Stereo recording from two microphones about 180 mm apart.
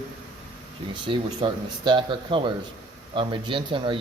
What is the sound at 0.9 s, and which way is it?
Speech, 25° right (ahead or behind).